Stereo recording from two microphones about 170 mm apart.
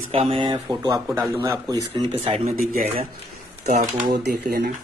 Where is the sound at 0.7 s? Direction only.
20° right (ahead or behind).